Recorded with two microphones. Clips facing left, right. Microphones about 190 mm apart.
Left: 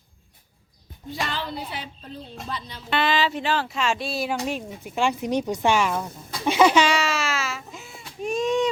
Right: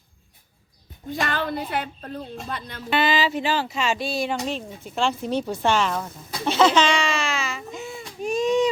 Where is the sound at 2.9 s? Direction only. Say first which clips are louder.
Right 1 dB; centre (ahead or behind).